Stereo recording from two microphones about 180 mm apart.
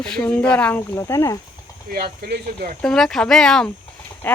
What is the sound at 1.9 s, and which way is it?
Speech, 60° right (ahead or behind).